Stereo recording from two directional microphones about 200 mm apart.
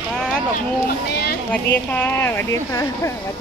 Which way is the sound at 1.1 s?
55° left (ahead or behind).